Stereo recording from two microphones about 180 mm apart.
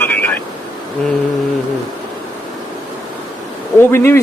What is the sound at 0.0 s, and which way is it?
Vehicle, 10° left (ahead or behind).